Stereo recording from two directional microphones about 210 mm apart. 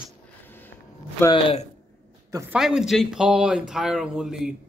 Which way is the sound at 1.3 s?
30° left (ahead or behind).